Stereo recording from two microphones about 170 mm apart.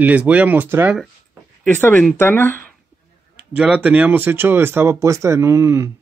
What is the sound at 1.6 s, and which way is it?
Speech, 10° left (ahead or behind).